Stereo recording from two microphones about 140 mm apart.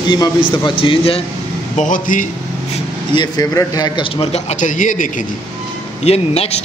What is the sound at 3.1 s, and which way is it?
Speech, 30° left (ahead or behind).